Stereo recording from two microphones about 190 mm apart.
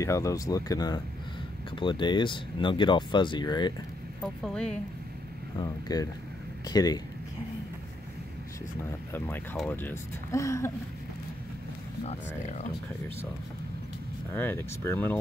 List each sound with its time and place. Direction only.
0.0 s speech: 15° left (ahead or behind)
4.2 s speech: 5° left (ahead or behind)
5.6 s speech: 20° left (ahead or behind)
9.1 s speech: 10° left (ahead or behind)
14.3 s speech: 10° left (ahead or behind)